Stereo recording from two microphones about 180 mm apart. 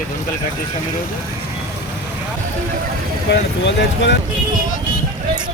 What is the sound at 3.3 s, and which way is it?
Boat, 75° left (ahead or behind).